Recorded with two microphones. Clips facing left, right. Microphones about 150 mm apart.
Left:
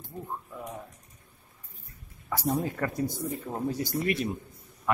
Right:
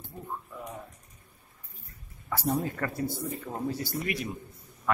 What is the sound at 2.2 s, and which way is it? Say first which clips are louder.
Speech: even; centre (ahead or behind).